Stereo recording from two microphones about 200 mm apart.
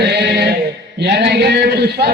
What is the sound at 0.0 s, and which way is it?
Music, 55° right (ahead or behind).